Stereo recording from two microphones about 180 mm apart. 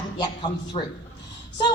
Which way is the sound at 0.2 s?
25° left (ahead or behind).